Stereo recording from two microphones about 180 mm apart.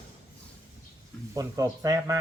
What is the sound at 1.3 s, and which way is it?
Speech, 20° right (ahead or behind).